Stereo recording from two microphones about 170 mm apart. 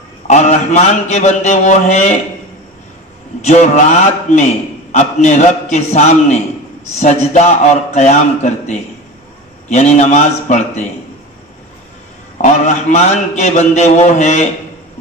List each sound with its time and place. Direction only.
0.3 s a man's voice: 40° left (ahead or behind)
3.4 s a man's voice: 40° left (ahead or behind)
12.4 s a man's voice: 40° left (ahead or behind)